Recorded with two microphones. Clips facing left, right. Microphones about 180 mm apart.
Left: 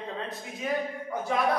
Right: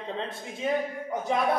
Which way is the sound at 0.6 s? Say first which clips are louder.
Right 3 dB; 25° right (ahead or behind).